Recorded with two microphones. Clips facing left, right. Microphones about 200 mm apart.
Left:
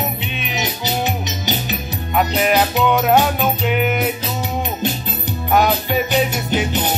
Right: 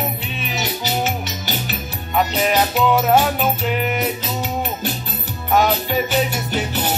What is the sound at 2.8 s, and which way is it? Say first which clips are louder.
Music: right 1 dB; centre (ahead or behind).